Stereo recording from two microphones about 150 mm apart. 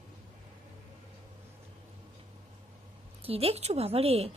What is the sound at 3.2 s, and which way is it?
A woman's voice, 40° right (ahead or behind).